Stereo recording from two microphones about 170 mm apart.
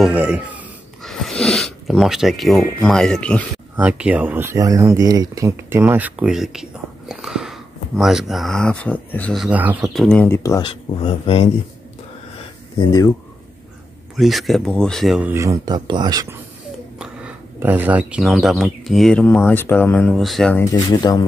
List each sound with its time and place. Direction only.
0.0 s speech: 10° right (ahead or behind)
1.0 s speech: centre (ahead or behind)
3.7 s speech: 10° right (ahead or behind); by 10.6 s 15° left (ahead or behind)
10.6 s speech: 30° left (ahead or behind)
14.1 s speech: centre (ahead or behind)
15.3 s speech: 20° right (ahead or behind)
17.0 s speech: 10° right (ahead or behind)
20.9 s speech: 20° left (ahead or behind)